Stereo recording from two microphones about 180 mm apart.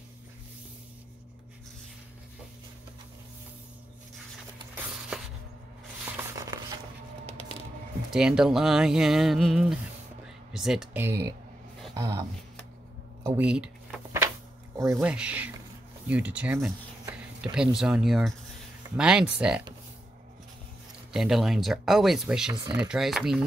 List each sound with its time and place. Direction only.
6.3 s a sound: 20° right (ahead or behind)
8.1 s speech: 5° right (ahead or behind)
13.5 s shuffling cards: 5° right (ahead or behind)
14.8 s speech: 15° right (ahead or behind)
21.1 s speech: centre (ahead or behind)
22.5 s speech: 25° right (ahead or behind)
22.8 s speech: 5° right (ahead or behind)